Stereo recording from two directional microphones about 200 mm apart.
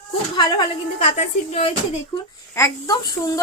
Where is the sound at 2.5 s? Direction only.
15° left (ahead or behind).